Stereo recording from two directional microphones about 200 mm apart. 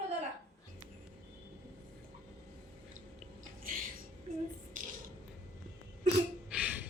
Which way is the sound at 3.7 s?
45° right (ahead or behind).